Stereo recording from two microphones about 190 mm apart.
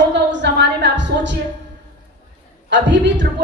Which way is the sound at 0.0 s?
65° right (ahead or behind).